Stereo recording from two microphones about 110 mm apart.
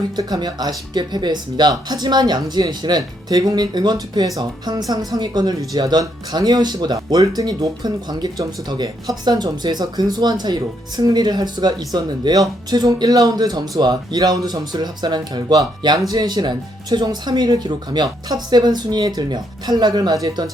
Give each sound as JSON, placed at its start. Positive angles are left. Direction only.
{"t": 0.2, "sound": "speech", "side_deg": -40}